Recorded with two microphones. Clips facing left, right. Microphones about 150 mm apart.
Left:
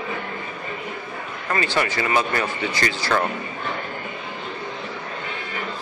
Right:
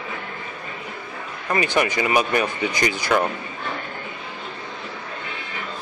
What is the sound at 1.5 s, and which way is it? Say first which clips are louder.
Speech: right 2 dB; 15° right (ahead or behind).